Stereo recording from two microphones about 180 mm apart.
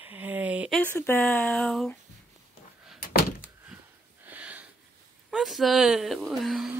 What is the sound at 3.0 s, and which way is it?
Door, 55° left (ahead or behind).